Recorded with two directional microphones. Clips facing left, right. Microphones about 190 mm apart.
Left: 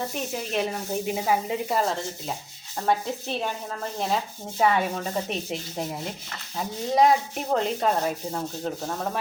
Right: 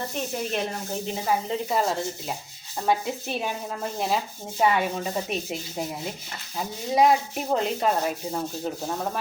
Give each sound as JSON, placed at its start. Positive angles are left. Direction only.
{"t": 0.1, "sound": "sanding", "side_deg": 0}
{"t": 1.8, "sound": "sanding", "side_deg": -5}
{"t": 2.8, "sound": "sizzle", "side_deg": -5}
{"t": 4.6, "sound": "sanding", "side_deg": -5}